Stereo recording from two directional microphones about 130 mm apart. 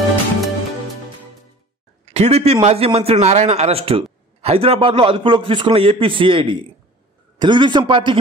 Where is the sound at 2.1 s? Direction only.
55° right (ahead or behind).